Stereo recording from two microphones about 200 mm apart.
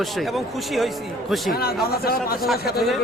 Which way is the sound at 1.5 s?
50° left (ahead or behind).